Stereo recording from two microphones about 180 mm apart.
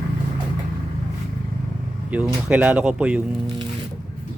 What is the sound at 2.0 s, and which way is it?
Speech, 10° right (ahead or behind).